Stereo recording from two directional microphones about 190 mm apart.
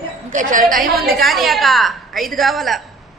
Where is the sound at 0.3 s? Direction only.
40° right (ahead or behind).